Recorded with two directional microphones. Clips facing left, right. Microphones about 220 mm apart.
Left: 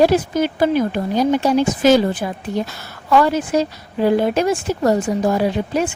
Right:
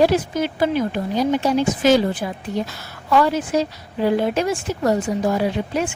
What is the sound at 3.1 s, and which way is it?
Speech, 45° left (ahead or behind).